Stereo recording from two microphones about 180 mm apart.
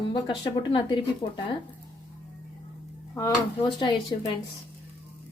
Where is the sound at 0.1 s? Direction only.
25° left (ahead or behind).